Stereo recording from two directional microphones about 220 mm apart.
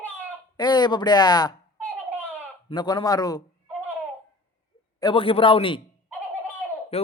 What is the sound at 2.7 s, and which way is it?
Speech, 20° left (ahead or behind).